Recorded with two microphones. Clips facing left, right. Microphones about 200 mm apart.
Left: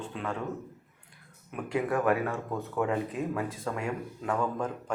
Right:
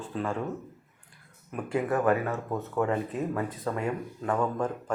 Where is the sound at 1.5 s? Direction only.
5° right (ahead or behind).